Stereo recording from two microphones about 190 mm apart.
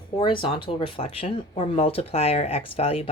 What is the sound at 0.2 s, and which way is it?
Speech, 25° left (ahead or behind).